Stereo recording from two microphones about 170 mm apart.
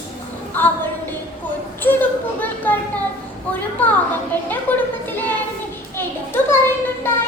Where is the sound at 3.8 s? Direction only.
10° left (ahead or behind).